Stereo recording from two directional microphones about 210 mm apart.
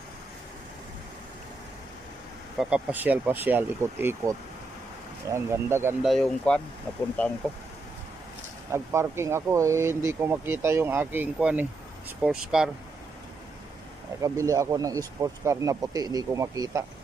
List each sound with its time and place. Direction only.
2.6 s speech: 5° right (ahead or behind)
6.0 s speech: centre (ahead or behind)
8.7 s speech: 10° right (ahead or behind)
14.2 s speech: 15° right (ahead or behind)